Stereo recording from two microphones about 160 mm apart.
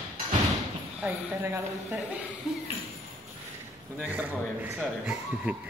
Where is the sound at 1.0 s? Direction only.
15° right (ahead or behind).